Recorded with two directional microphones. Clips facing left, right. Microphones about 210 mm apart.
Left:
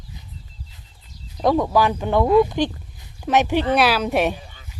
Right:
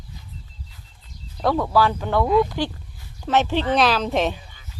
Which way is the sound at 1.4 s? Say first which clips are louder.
Left 2 dB; 15° left (ahead or behind).